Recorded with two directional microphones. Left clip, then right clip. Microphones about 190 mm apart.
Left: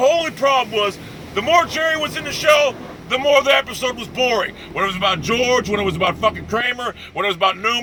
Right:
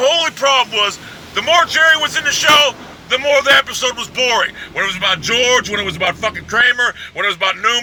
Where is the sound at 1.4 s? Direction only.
30° right (ahead or behind).